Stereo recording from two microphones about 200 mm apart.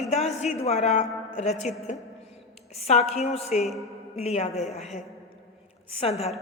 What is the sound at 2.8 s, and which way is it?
Speech, 30° left (ahead or behind).